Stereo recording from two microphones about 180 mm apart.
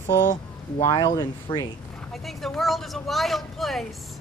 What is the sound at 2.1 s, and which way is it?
Speech, centre (ahead or behind).